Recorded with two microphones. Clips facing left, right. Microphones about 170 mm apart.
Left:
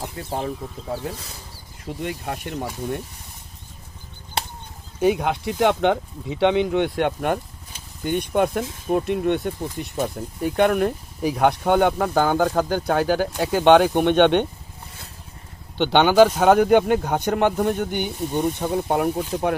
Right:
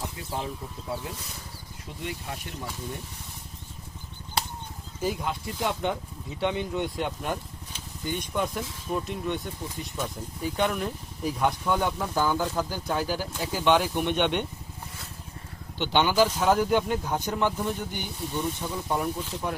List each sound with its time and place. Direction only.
0.3 s speech: 55° left (ahead or behind)
2.0 s speech: 65° left (ahead or behind)
4.9 s speech: 70° left (ahead or behind); by 14.4 s 90° left
15.8 s speech: 70° left (ahead or behind)